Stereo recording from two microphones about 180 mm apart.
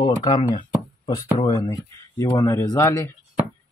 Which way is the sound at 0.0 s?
25° left (ahead or behind).